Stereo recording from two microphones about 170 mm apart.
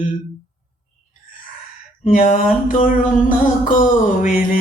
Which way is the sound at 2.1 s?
50° left (ahead or behind).